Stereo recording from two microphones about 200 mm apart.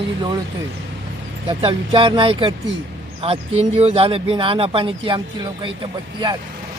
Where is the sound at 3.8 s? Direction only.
30° right (ahead or behind).